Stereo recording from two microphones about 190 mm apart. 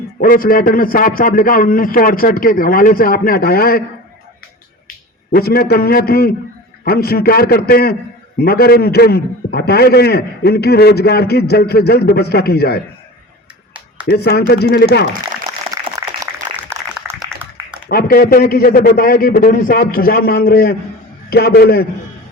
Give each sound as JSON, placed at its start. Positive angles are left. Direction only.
{"t": 0.2, "sound": "a man's voice", "side_deg": 50}
{"t": 5.3, "sound": "a man's voice", "side_deg": 55}
{"t": 14.1, "sound": "a man's voice", "side_deg": 55}
{"t": 15.7, "sound": "a sound", "side_deg": -20}
{"t": 17.8, "sound": "a man's voice", "side_deg": 55}